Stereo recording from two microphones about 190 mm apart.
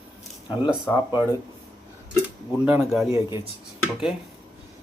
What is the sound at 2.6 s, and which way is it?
Speech, 5° right (ahead or behind).